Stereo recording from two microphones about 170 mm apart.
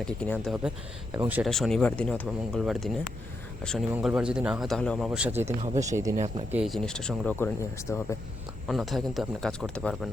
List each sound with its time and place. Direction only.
0.0 s speech: 5° left (ahead or behind); by 6.1 s 20° right (ahead or behind)
6.1 s speech: 40° right (ahead or behind)
6.5 s speech: centre (ahead or behind); by 8.0 s 15° left (ahead or behind)
8.6 s speech: centre (ahead or behind)